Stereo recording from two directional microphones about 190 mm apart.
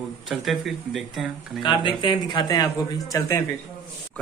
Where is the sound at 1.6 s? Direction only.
25° left (ahead or behind).